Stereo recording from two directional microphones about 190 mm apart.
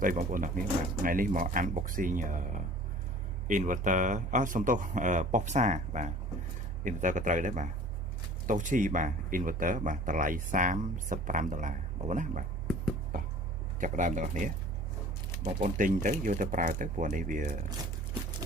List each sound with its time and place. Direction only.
0.0 s speech: 45° right (ahead or behind)
13.7 s speech: 45° right (ahead or behind)